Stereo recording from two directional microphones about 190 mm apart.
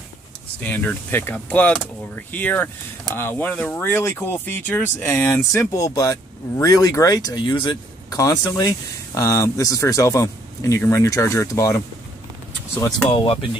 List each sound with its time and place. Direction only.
0.6 s speech: 10° left (ahead or behind)
12.7 s speech: 15° left (ahead or behind)
13.1 s speech: 25° left (ahead or behind)